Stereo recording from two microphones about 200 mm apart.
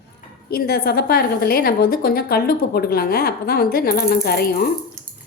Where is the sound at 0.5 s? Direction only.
50° left (ahead or behind).